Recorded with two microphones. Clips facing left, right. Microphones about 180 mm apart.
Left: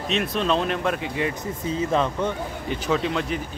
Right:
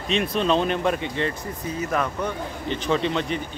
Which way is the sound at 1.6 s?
25° left (ahead or behind).